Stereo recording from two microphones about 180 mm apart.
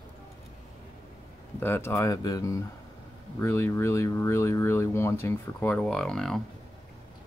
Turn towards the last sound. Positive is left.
turn(degrees=5)  # may be behind; listen again after turning